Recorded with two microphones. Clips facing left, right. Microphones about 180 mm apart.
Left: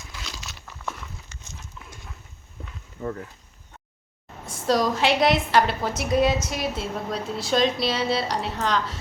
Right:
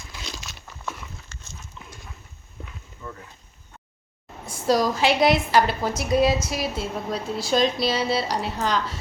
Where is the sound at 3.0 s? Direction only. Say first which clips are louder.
Left 8 dB; 60° left (ahead or behind).